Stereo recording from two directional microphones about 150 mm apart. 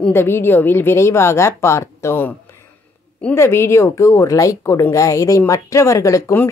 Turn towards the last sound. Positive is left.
turn(degrees=20)  # may be behind; listen again after turning